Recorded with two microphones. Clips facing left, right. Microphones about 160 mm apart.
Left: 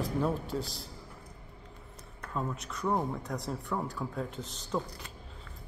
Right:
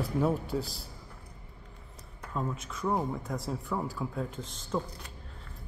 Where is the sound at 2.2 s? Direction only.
Centre (ahead or behind).